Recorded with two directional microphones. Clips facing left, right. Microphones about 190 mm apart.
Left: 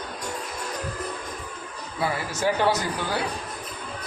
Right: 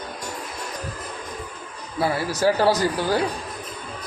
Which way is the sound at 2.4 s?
35° right (ahead or behind).